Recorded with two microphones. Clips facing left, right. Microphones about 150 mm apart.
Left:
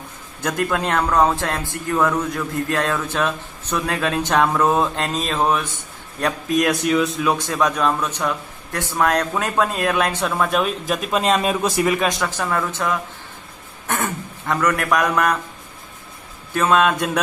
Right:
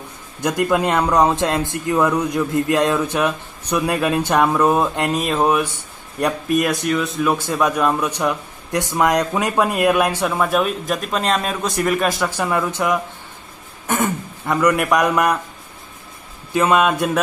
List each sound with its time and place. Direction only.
0.4 s a man's voice: 10° right (ahead or behind)
6.6 s a man's voice: centre (ahead or behind)
16.5 s a man's voice: 10° right (ahead or behind)